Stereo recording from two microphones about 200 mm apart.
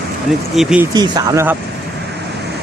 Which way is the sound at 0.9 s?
20° right (ahead or behind).